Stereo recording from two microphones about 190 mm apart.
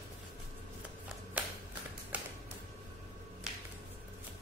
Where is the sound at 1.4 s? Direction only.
10° right (ahead or behind).